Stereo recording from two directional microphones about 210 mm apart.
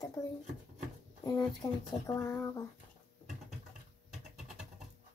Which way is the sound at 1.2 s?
15° left (ahead or behind).